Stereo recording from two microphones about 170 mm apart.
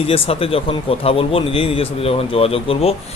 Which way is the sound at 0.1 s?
35° left (ahead or behind).